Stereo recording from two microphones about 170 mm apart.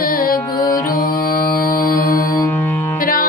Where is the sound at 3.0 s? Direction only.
55° left (ahead or behind).